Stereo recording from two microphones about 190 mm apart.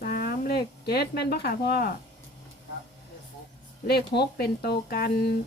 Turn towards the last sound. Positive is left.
turn(degrees=55)  # may be behind; listen again after turning